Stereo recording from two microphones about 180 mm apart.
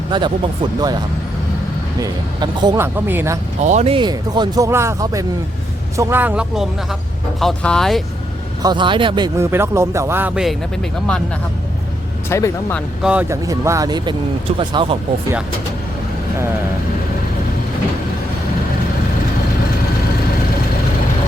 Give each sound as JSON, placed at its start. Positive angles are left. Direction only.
{"t": 0.1, "sound": "speech", "side_deg": -25}
{"t": 2.0, "sound": "speech", "side_deg": -25}
{"t": 2.8, "sound": "speech", "side_deg": -10}
{"t": 3.6, "sound": "speech", "side_deg": -40}
{"t": 7.3, "sound": "speech", "side_deg": 5}
{"t": 8.6, "sound": "speech", "side_deg": -25}
{"t": 12.3, "sound": "speech", "side_deg": 15}
{"t": 13.0, "sound": "speech", "side_deg": -5}